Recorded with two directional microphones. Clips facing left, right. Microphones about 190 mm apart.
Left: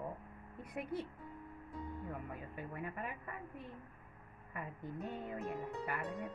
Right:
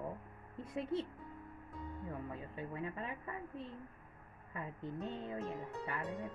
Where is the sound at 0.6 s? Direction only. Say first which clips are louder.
Right 3 dB; 25° right (ahead or behind).